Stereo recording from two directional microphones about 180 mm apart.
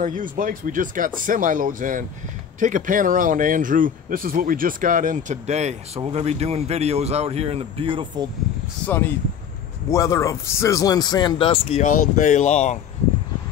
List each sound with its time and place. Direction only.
0.0 s speech: 50° right (ahead or behind); by 8.3 s 30° right (ahead or behind)
8.8 s a man's voice: 10° left (ahead or behind); by 11.8 s 30° left (ahead or behind)
11.8 s speech: 45° left (ahead or behind)